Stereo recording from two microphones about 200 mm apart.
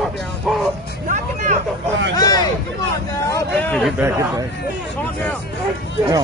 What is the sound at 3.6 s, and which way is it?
Speech, 5° left (ahead or behind).